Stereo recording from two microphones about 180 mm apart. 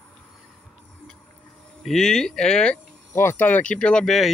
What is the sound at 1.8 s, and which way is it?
Speech, centre (ahead or behind).